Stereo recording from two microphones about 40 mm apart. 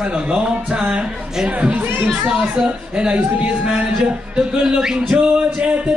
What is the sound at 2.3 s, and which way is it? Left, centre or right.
Speech, right.